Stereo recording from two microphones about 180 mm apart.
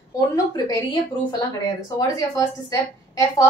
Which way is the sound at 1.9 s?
20° left (ahead or behind).